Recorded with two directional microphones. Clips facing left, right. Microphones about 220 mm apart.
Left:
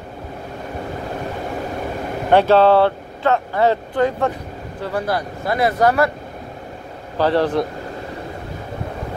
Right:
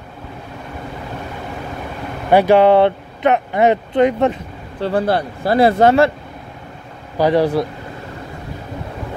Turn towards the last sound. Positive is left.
turn(degrees=-10)  # may be behind; listen again after turning